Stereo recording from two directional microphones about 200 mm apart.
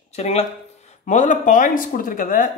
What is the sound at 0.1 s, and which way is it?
Speech, 30° left (ahead or behind).